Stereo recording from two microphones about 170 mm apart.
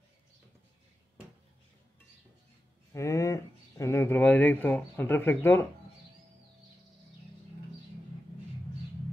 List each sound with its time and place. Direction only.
2.9 s speech: 20° left (ahead or behind)